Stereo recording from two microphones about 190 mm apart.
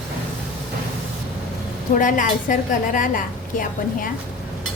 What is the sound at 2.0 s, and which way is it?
A woman's voice, 45° left (ahead or behind).